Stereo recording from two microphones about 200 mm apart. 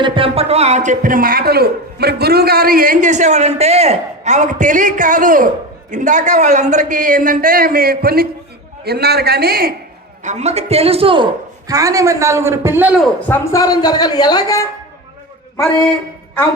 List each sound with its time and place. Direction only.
0.0 s a man's voice: 25° right (ahead or behind); by 9.7 s 50° right (ahead or behind)
10.2 s a man's voice: 35° right (ahead or behind); by 13.0 s 10° right (ahead or behind)
13.2 s a woman's voice: 10° left (ahead or behind)